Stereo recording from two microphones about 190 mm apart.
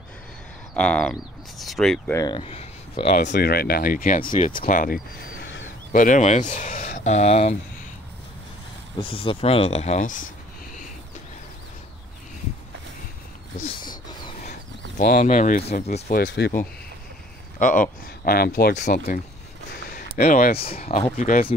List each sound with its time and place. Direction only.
0.7 s speech: 5° left (ahead or behind)
2.1 s speech: 25° left (ahead or behind)
3.3 s speech: 55° left (ahead or behind)
5.9 s speech: 45° left (ahead or behind)
9.0 s speech: 30° left (ahead or behind); by 10.3 s 45° left (ahead or behind)
13.7 s wild animals: 25° left (ahead or behind)
15.0 s speech: 45° left (ahead or behind)
16.1 s speech: 55° left (ahead or behind)
17.6 s speech: 45° left (ahead or behind)
19.8 s a sound: 50° left (ahead or behind)
20.2 s speech: 45° left (ahead or behind)